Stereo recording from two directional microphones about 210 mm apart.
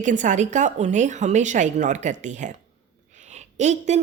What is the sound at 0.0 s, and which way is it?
A woman's voice, 35° right (ahead or behind).